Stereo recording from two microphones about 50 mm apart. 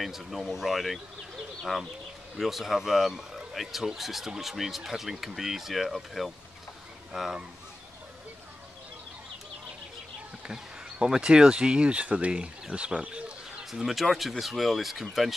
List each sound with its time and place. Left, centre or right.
0.0 s speech: centre
10.5 s speech: centre
13.7 s speech: centre